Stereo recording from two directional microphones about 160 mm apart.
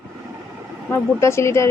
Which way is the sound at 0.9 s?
15° left (ahead or behind).